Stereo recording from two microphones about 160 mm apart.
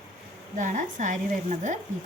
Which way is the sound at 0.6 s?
50° right (ahead or behind).